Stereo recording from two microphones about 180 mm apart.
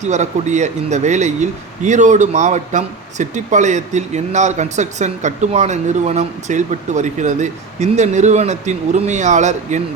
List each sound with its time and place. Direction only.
0.0 s speech: 40° right (ahead or behind)